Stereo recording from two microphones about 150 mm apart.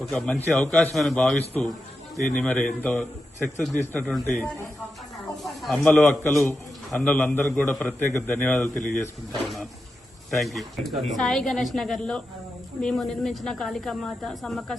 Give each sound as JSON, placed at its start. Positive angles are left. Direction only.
{"t": 0.1, "sound": "a man's voice", "side_deg": 10}
{"t": 5.1, "sound": "snake", "side_deg": 0}
{"t": 5.7, "sound": "a man's voice", "side_deg": 15}
{"t": 8.7, "sound": "speech", "side_deg": 55}
{"t": 10.3, "sound": "speech", "side_deg": 0}